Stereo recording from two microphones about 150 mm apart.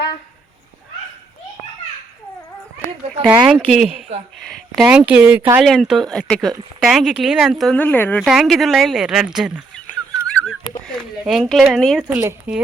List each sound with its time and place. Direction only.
3.2 s speech: 5° right (ahead or behind)
5.6 s speech: centre (ahead or behind)
7.8 s speech: 10° left (ahead or behind)
8.2 s speech: centre (ahead or behind)
11.3 s speech: centre (ahead or behind)
12.0 s speech: 10° right (ahead or behind)